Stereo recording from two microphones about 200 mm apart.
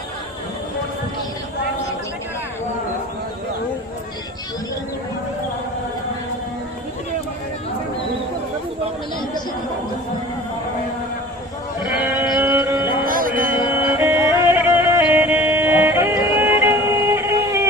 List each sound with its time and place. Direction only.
11.9 s sheep: 10° right (ahead or behind)
12.5 s music: 15° right (ahead or behind)
13.1 s music: 45° right (ahead or behind)
13.7 s music: 10° right (ahead or behind)